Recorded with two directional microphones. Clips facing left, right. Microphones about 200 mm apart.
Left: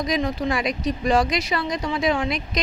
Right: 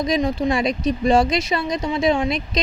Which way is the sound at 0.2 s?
20° right (ahead or behind).